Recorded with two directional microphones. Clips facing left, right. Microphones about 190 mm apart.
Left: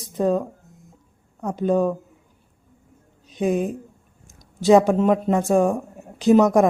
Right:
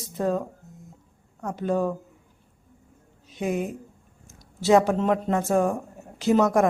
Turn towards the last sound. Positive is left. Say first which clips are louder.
# left 5 dB
turn(degrees=15)  # may be behind; listen again after turning